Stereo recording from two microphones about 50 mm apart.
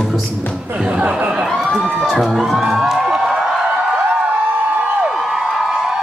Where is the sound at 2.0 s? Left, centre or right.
Centre.